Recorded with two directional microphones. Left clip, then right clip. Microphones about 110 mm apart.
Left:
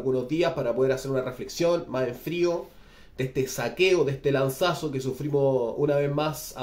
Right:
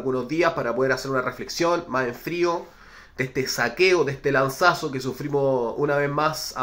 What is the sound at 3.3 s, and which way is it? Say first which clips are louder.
Speech: right 3 dB; 20° left (ahead or behind).